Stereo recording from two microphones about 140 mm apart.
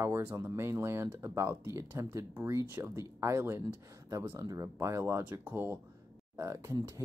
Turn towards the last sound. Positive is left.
turn(degrees=-20)  # may be behind; listen again after turning